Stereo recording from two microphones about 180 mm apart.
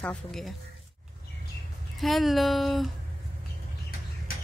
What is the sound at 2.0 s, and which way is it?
Speech, centre (ahead or behind).